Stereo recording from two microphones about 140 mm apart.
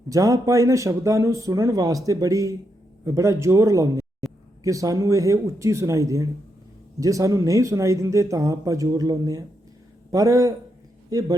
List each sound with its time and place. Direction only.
0.1 s a man's voice: 25° right (ahead or behind)